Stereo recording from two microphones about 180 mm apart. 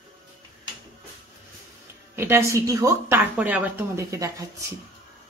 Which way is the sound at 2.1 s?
15° right (ahead or behind).